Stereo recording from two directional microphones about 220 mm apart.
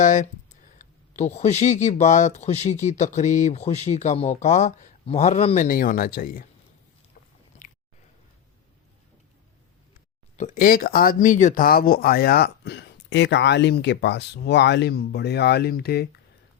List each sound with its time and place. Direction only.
0.0 s speech: 35° left (ahead or behind)
7.6 s a sound: 35° left (ahead or behind)
10.3 s speech: 35° left (ahead or behind)